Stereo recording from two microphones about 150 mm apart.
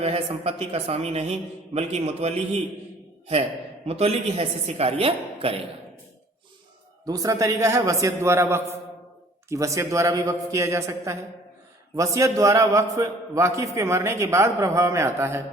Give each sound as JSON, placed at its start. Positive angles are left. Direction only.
{"t": 0.0, "sound": "a man's voice", "side_deg": -45}
{"t": 3.8, "sound": "a woman's voice", "side_deg": -40}
{"t": 7.0, "sound": "a man's voice", "side_deg": -25}